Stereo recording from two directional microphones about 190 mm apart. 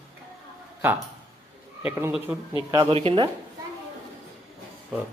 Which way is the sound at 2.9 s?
30° right (ahead or behind).